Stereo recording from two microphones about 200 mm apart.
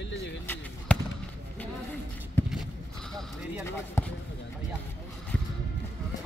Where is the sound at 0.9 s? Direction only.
5° left (ahead or behind).